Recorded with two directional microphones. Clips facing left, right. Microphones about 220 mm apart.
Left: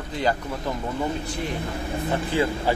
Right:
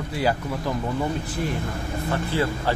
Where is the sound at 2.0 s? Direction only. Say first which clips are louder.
Left 1 dB; 15° left (ahead or behind).